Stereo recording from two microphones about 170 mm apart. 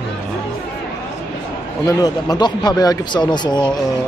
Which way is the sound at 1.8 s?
20° left (ahead or behind).